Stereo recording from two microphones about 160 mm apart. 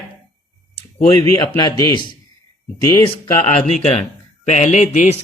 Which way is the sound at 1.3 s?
25° left (ahead or behind).